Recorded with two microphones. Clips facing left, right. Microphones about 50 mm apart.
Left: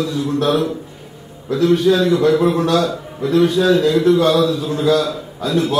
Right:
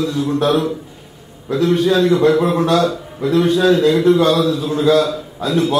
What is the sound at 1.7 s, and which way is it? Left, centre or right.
A man's voice, right.